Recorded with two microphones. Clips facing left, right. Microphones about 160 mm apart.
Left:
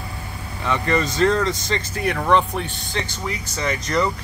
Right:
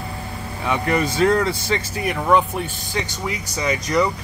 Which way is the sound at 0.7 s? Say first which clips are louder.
Right 1 dB; 15° right (ahead or behind).